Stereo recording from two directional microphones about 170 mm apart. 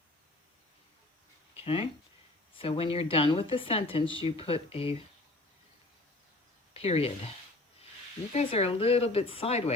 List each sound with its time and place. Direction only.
1.5 s speech: 35° left (ahead or behind)
6.7 s speech: 35° left (ahead or behind)
8.3 s speech: 40° left (ahead or behind)